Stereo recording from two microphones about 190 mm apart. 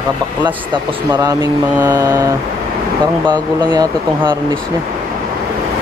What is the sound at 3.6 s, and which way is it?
Speech, 25° right (ahead or behind).